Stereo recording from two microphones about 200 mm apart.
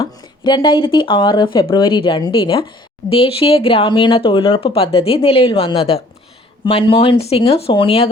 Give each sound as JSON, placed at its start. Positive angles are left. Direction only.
{"t": 0.0, "sound": "speech", "side_deg": 20}